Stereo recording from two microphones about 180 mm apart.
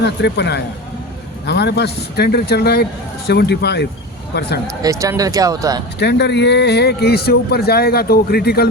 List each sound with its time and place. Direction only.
0.0 s a man's voice: 70° left (ahead or behind)
4.8 s speech: 20° right (ahead or behind)
6.0 s a man's voice: 70° left (ahead or behind)